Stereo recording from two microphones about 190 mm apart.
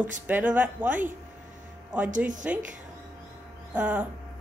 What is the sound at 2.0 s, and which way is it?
Speech, 40° right (ahead or behind).